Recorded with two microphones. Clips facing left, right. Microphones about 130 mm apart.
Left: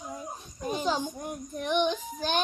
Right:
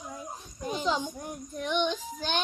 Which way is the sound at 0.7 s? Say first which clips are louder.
Even; 50° left (ahead or behind).